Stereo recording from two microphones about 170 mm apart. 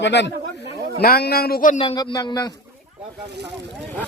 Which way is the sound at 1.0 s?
65° left (ahead or behind).